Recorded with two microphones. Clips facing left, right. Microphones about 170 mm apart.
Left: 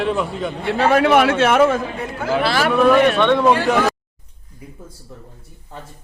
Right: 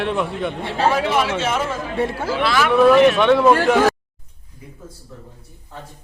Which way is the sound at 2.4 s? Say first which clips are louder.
Left 1 dB; 35° left (ahead or behind).